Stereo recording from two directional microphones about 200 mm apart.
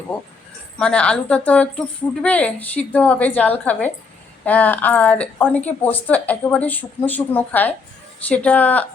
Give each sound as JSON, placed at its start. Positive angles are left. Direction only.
{"t": 0.8, "sound": "a woman's voice", "side_deg": 5}